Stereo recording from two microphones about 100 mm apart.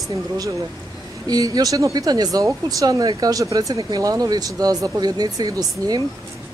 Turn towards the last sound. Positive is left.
turn(degrees=-40)  # may be behind; listen again after turning